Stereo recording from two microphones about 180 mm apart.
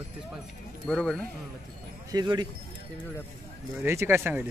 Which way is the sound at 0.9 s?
5° left (ahead or behind).